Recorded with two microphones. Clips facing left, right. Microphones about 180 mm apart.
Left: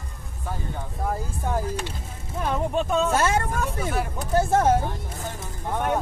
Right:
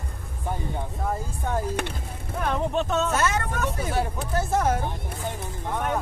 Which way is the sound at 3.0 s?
30° left (ahead or behind).